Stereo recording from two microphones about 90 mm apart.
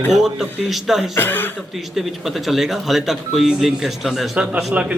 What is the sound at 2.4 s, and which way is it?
A man's voice, centre (ahead or behind).